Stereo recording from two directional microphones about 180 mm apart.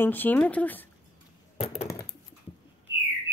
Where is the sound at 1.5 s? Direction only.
35° left (ahead or behind).